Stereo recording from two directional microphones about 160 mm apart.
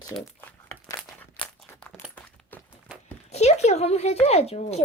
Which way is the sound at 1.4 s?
35° left (ahead or behind).